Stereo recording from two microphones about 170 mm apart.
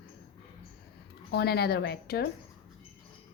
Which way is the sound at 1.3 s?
70° left (ahead or behind).